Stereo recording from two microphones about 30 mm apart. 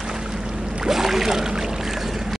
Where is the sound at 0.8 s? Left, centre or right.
Centre.